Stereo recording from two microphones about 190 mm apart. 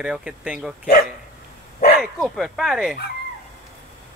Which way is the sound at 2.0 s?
Centre (ahead or behind).